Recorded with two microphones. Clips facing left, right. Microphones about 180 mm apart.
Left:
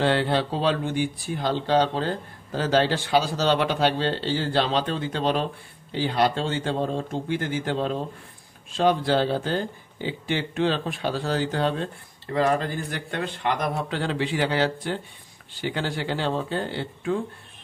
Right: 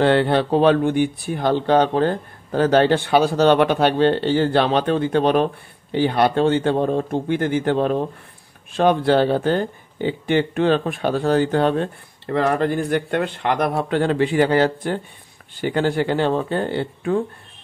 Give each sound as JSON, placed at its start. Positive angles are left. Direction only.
{"t": 0.0, "sound": "speech", "side_deg": -55}